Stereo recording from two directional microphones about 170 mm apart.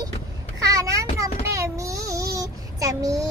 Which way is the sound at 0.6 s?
20° right (ahead or behind).